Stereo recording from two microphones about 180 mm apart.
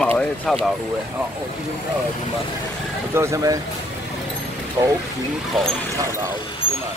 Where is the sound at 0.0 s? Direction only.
5° left (ahead or behind).